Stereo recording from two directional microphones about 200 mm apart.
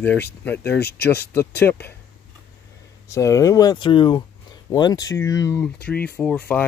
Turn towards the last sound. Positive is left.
turn(degrees=5)  # may be behind; listen again after turning